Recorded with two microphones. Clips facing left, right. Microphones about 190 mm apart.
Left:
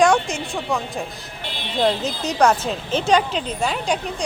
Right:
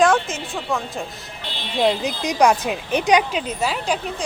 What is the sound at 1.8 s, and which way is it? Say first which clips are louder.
A woman's voice: right 1 dB; 10° right (ahead or behind).